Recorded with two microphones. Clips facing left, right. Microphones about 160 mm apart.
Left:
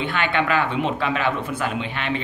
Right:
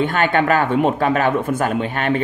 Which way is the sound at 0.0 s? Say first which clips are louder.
Right 6 dB; 45° right (ahead or behind).